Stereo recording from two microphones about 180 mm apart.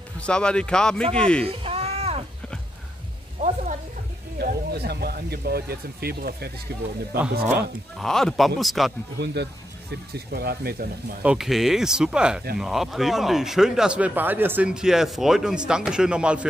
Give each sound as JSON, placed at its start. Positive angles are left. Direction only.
{"t": 0.2, "sound": "a man's voice", "side_deg": 5}
{"t": 1.6, "sound": "a sound", "side_deg": -35}
{"t": 3.3, "sound": "speech", "side_deg": -40}
{"t": 4.4, "sound": "speech", "side_deg": -60}
{"t": 8.0, "sound": "a man's voice", "side_deg": 0}
{"t": 9.2, "sound": "speech", "side_deg": -70}
{"t": 11.2, "sound": "a man's voice", "side_deg": 0}